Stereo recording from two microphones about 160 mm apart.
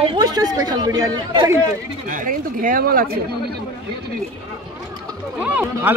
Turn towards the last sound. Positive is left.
turn(degrees=-10)  # may be behind; listen again after turning